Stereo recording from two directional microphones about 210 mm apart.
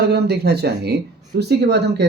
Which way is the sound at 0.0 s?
50° right (ahead or behind).